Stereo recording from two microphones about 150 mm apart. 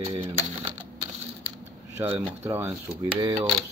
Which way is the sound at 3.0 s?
35° right (ahead or behind).